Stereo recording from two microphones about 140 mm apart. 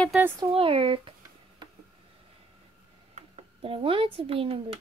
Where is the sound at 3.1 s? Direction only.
45° right (ahead or behind).